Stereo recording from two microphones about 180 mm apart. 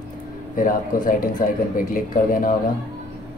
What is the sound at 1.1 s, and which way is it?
Speech, 50° left (ahead or behind).